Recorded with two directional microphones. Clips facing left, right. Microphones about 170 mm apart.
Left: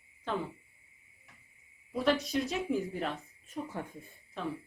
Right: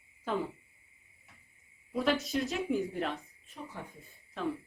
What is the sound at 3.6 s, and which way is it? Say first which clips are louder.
Speech: left 6 dB; 40° left (ahead or behind).